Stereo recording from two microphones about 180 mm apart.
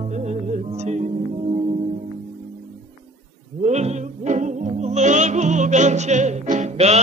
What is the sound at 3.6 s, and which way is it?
Music, 40° right (ahead or behind).